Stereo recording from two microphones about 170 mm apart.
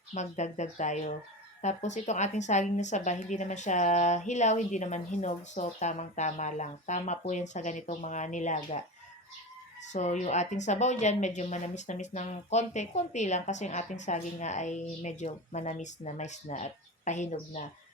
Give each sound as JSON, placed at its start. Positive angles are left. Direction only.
{"t": 0.1, "sound": "a woman's voice", "side_deg": 45}
{"t": 9.9, "sound": "a woman's voice", "side_deg": 45}